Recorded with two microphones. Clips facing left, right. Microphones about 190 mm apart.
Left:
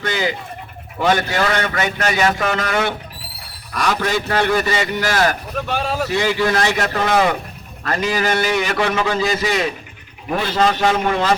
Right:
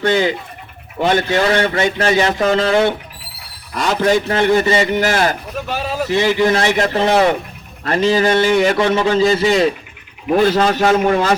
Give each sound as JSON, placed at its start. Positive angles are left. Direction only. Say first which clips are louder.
{"t": 0.0, "sound": "a man's voice", "louder": "right 6 dB", "side_deg": -30}
{"t": 5.7, "sound": "a man's voice", "louder": "even", "side_deg": -5}
{"t": 6.1, "sound": "a man's voice", "louder": "right 6 dB", "side_deg": -20}
{"t": 10.4, "sound": "a man's voice", "louder": "right 2 dB", "side_deg": -45}